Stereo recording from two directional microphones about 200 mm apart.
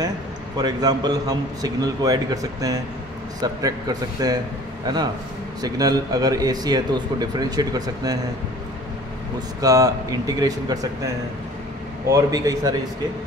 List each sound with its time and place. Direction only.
0.6 s speech: 20° right (ahead or behind)
9.6 s speech: 15° right (ahead or behind)
12.1 s speech: 20° right (ahead or behind)